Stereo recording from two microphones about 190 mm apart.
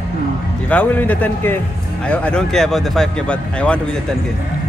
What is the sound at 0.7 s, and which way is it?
A man's voice, 10° left (ahead or behind).